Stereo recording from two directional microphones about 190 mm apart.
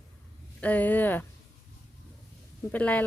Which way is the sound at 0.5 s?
10° left (ahead or behind).